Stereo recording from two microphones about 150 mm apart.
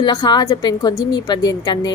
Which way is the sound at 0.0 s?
30° left (ahead or behind).